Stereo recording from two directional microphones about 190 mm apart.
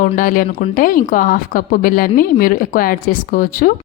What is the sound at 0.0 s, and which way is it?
Speech, 45° left (ahead or behind).